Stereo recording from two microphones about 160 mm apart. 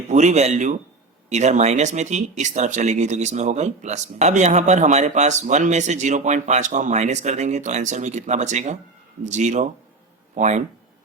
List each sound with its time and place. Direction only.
0.1 s speech: 45° right (ahead or behind)